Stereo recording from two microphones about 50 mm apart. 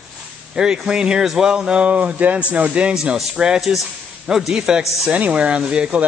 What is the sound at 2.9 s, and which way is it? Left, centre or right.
Speech, centre.